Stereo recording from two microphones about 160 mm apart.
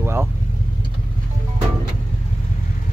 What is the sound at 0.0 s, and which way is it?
Speech, 15° right (ahead or behind).